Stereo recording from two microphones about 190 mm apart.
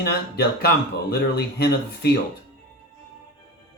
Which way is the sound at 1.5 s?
60° left (ahead or behind).